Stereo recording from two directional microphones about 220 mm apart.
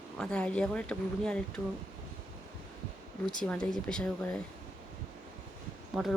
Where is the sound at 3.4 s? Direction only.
5° left (ahead or behind).